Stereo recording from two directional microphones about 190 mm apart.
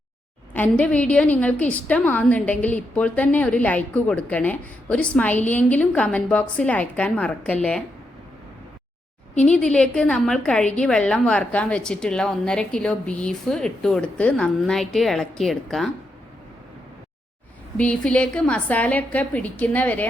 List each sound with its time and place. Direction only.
0.5 s a woman's voice: 10° left (ahead or behind)
9.3 s a woman's voice: 5° left (ahead or behind)
17.7 s a woman's voice: 5° left (ahead or behind)